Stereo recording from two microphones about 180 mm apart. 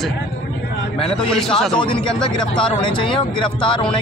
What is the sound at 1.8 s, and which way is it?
Speech, 25° left (ahead or behind).